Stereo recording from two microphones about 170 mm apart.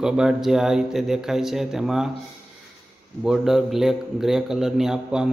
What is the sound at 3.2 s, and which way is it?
A man's voice, centre (ahead or behind).